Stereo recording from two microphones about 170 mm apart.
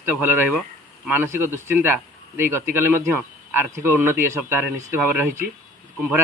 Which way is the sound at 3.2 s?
10° right (ahead or behind).